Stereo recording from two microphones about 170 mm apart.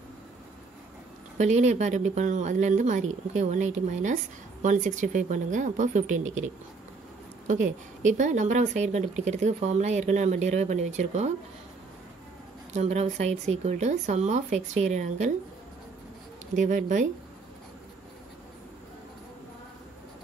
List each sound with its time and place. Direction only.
1.4 s speech: 45° right (ahead or behind)
12.7 s speech: 40° right (ahead or behind)
16.5 s speech: 45° right (ahead or behind)